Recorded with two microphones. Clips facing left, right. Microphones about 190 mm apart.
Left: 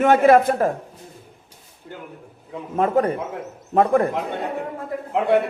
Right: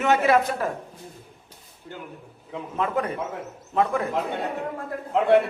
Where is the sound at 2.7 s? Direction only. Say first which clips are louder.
Left 7 dB; 45° left (ahead or behind).